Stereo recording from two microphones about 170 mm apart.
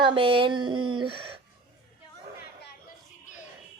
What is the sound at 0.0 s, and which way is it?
Speech, 30° right (ahead or behind).